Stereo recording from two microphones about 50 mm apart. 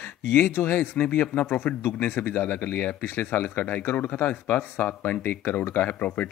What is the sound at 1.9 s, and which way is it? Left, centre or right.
Speech, left.